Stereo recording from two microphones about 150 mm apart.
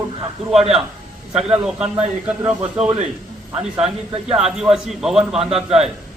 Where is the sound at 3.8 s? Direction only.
40° right (ahead or behind).